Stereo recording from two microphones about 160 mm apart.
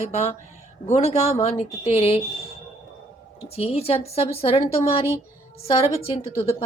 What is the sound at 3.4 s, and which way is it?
A woman's voice, 40° left (ahead or behind).